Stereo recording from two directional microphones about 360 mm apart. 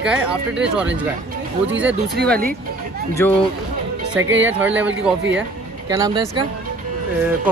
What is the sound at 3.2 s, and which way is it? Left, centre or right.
Speech, centre.